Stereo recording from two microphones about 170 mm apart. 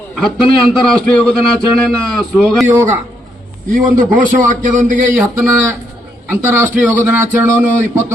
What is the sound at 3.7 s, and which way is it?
A man's voice, 50° right (ahead or behind).